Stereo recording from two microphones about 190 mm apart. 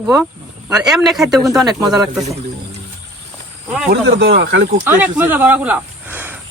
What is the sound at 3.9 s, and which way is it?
Speech, 65° right (ahead or behind).